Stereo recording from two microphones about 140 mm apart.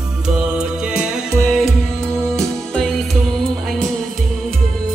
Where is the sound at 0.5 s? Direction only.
5° right (ahead or behind).